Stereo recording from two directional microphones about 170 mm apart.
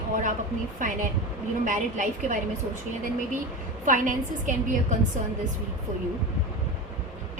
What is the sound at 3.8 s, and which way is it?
A woman's voice, 50° right (ahead or behind).